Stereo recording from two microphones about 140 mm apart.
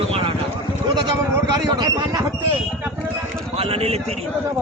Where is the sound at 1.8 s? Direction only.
25° right (ahead or behind).